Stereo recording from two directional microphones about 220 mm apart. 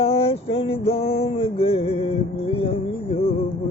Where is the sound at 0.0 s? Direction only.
25° left (ahead or behind).